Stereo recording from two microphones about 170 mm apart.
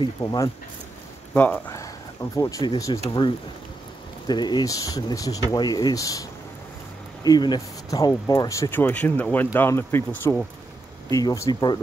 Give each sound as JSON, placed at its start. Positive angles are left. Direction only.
{"t": 0.0, "sound": "speech", "side_deg": 25}
{"t": 1.3, "sound": "speech", "side_deg": 10}
{"t": 7.2, "sound": "speech", "side_deg": 25}